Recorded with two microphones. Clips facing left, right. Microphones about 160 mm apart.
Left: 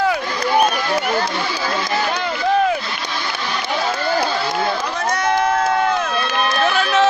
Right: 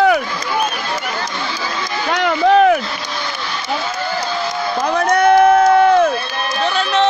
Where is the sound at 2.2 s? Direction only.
65° right (ahead or behind).